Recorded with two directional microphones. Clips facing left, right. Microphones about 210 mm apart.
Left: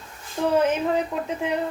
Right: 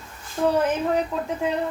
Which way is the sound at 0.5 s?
20° left (ahead or behind).